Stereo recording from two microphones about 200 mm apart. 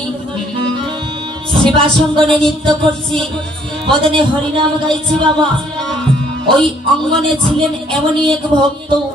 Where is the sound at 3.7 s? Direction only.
5° left (ahead or behind).